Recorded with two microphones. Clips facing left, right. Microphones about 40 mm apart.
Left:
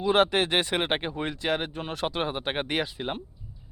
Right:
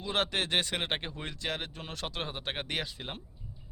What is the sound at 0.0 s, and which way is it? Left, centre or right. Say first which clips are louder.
Speech: left 9 dB; centre.